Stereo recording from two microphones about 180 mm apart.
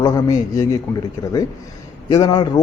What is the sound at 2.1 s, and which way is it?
Speech, 20° left (ahead or behind).